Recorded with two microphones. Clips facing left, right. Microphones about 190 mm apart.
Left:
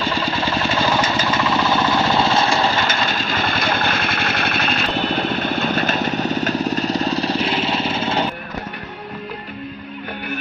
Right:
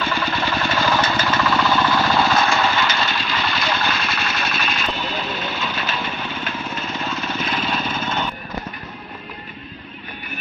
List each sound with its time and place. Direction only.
0.0 s engine: 25° left (ahead or behind)
1.3 s vehicle: 25° left (ahead or behind)